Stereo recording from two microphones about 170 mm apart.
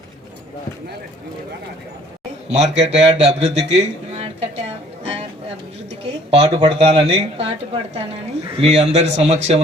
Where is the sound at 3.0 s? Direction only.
35° right (ahead or behind).